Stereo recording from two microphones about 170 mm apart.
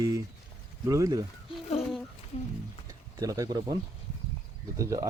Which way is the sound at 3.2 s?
20° right (ahead or behind).